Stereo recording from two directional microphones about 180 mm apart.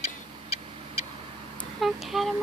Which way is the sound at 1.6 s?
Centre (ahead or behind).